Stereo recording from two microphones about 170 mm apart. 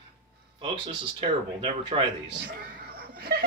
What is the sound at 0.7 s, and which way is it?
A man's voice, 30° right (ahead or behind).